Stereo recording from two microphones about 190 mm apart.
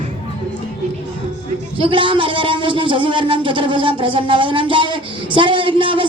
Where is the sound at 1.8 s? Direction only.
25° right (ahead or behind).